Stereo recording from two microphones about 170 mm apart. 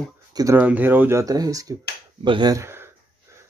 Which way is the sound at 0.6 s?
10° right (ahead or behind).